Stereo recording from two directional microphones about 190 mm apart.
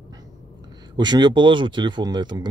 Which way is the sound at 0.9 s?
20° right (ahead or behind).